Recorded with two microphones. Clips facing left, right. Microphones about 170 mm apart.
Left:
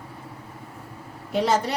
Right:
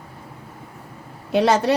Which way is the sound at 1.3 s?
70° right (ahead or behind).